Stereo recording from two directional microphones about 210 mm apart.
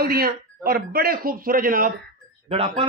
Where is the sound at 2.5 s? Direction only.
25° right (ahead or behind).